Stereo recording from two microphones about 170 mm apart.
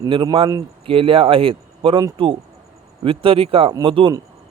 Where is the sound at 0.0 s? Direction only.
25° right (ahead or behind).